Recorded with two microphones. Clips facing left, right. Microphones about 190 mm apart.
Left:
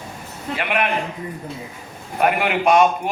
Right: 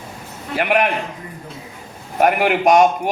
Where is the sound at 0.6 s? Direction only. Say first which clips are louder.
Right 5 dB; 45° right (ahead or behind).